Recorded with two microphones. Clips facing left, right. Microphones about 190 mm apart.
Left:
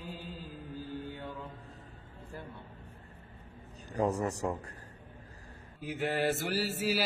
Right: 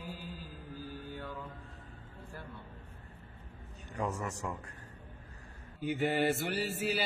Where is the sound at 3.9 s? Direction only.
35° left (ahead or behind).